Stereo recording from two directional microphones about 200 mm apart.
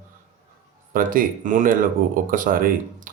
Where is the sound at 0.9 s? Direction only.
45° right (ahead or behind).